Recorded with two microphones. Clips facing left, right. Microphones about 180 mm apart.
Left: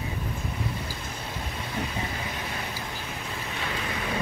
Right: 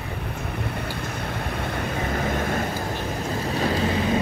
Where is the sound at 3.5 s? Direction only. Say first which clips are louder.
Right 11 dB; 35° right (ahead or behind).